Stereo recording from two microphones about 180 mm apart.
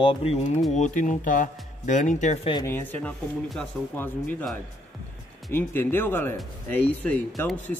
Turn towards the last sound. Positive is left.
turn(degrees=5)  # may be behind; listen again after turning